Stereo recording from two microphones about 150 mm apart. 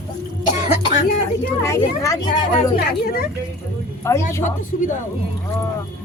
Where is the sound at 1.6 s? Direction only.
20° left (ahead or behind).